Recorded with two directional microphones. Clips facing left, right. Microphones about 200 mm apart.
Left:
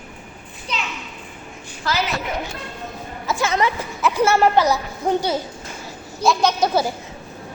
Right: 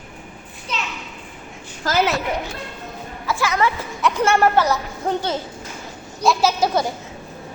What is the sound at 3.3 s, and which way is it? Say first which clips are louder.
Speech: even; 20° left (ahead or behind).